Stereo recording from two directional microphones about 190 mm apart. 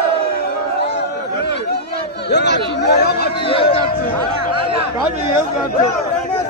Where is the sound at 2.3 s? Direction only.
65° left (ahead or behind).